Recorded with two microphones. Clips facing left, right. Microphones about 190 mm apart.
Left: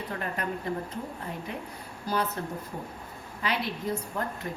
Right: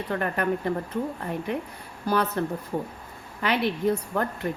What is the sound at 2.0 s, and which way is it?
Speech, 60° right (ahead or behind).